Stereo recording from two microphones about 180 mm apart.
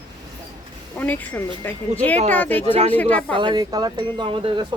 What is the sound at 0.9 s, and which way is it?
Speech, 10° left (ahead or behind).